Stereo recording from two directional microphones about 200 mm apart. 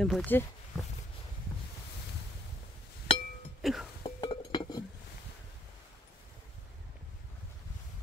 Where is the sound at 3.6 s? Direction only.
Centre (ahead or behind).